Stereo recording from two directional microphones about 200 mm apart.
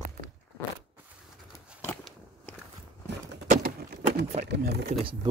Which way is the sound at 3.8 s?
50° right (ahead or behind).